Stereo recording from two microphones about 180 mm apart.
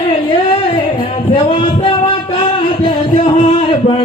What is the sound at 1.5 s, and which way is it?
Music, 30° left (ahead or behind).